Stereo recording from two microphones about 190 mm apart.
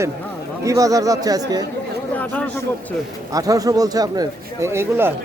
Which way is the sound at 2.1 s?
10° left (ahead or behind).